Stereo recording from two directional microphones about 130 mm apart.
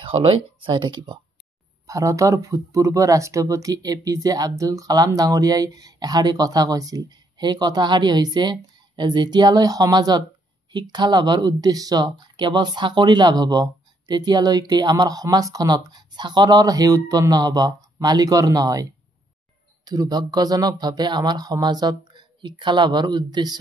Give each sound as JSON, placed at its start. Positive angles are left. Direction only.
{"t": 0.0, "sound": "speech", "side_deg": -45}
{"t": 1.9, "sound": "speech", "side_deg": -25}